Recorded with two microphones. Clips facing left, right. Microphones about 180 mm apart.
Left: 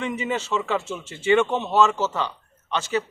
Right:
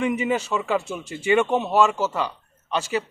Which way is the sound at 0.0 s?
10° right (ahead or behind).